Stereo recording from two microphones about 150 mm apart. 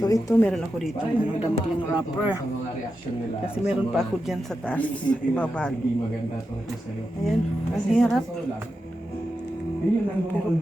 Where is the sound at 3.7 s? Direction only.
5° right (ahead or behind).